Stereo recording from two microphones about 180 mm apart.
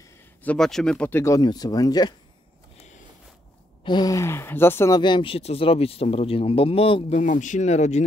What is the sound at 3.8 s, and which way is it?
Speech, 25° left (ahead or behind).